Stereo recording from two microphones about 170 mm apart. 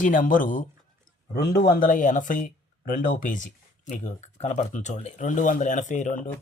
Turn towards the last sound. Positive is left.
turn(degrees=45)  # may be behind; listen again after turning